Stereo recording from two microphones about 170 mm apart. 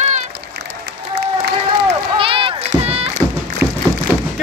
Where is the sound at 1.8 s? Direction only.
30° right (ahead or behind).